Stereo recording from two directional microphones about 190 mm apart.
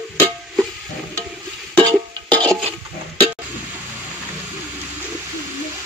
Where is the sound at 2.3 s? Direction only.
5° left (ahead or behind).